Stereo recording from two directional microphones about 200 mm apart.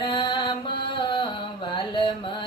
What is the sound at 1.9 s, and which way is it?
Carnatic music, 25° left (ahead or behind).